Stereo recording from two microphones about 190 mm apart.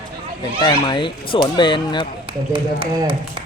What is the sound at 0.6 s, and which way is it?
Speech, 25° left (ahead or behind).